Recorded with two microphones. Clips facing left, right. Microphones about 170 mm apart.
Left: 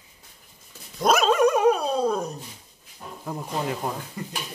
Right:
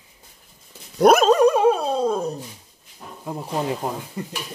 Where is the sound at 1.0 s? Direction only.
60° right (ahead or behind).